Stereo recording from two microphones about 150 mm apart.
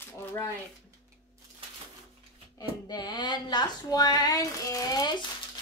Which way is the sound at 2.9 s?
30° left (ahead or behind).